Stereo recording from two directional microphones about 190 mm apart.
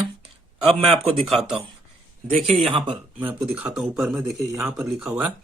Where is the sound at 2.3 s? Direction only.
35° right (ahead or behind).